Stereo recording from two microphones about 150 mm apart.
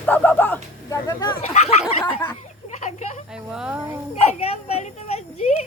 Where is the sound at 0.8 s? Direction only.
25° left (ahead or behind).